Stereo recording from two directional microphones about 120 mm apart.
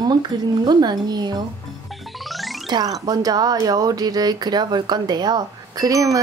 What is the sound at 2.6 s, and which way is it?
Speech, 35° right (ahead or behind).